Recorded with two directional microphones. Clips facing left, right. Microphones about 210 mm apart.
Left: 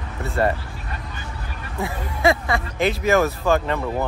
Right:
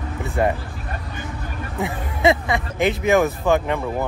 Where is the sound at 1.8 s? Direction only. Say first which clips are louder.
Right 1 dB; 20° right (ahead or behind).